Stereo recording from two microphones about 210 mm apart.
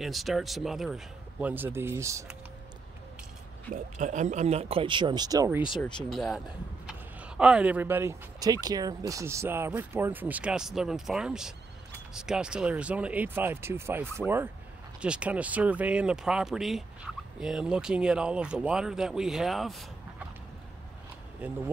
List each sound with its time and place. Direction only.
0.0 s speech: centre (ahead or behind)
3.7 s speech: 35° right (ahead or behind); by 5.6 s 15° right (ahead or behind)
5.9 s speech: centre (ahead or behind)
21.4 s speech: 5° right (ahead or behind)